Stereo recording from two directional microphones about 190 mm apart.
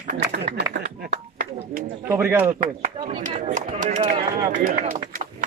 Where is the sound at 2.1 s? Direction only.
10° right (ahead or behind).